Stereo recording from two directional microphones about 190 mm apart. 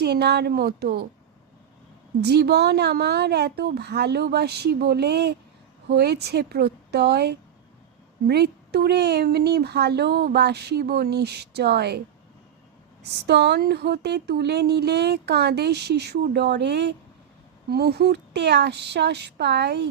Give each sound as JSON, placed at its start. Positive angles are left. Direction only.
{"t": 0.0, "sound": "speech", "side_deg": -60}
{"t": 2.2, "sound": "speech", "side_deg": -60}